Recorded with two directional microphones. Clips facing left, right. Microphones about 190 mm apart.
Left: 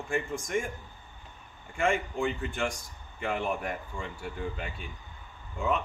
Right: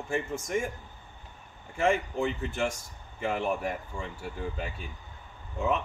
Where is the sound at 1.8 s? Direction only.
5° right (ahead or behind).